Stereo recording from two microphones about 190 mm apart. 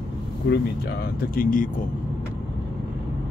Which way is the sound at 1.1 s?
45° left (ahead or behind).